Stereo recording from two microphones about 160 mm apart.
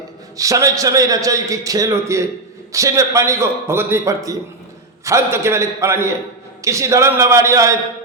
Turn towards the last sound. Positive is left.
turn(degrees=-20)  # may be behind; listen again after turning